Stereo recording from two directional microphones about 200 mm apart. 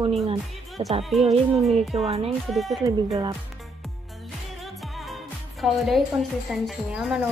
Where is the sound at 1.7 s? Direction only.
30° right (ahead or behind).